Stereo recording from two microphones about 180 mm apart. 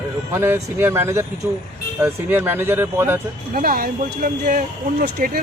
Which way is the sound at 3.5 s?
50° right (ahead or behind).